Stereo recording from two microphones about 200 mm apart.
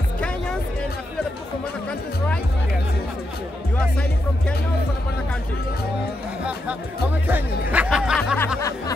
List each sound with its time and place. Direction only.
1.9 s music: 5° left (ahead or behind)
7.2 s music: 10° right (ahead or behind)
8.5 s music: 15° left (ahead or behind)